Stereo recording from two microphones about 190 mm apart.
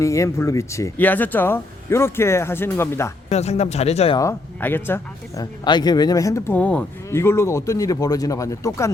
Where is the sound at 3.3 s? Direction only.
35° left (ahead or behind).